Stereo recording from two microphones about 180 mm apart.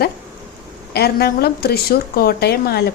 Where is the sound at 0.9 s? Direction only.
60° left (ahead or behind).